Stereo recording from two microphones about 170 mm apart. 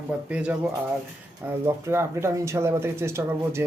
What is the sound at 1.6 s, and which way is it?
Speech, 15° right (ahead or behind).